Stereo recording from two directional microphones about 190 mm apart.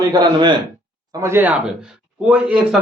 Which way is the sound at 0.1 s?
20° right (ahead or behind).